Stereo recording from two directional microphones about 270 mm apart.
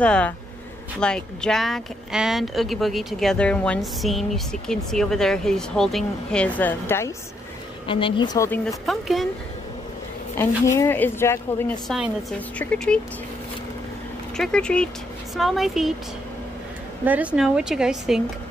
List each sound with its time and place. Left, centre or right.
0.0 s a woman's voice: centre
8.6 s speech: centre
10.8 s speech: centre
14.3 s speech: centre
17.0 s speech: centre